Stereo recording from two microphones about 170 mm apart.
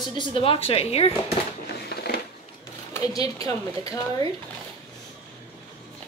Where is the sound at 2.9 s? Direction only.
20° left (ahead or behind).